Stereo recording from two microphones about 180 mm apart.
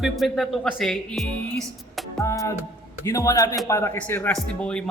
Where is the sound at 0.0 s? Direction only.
Centre (ahead or behind).